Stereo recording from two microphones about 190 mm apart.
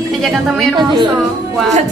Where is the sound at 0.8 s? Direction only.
20° right (ahead or behind).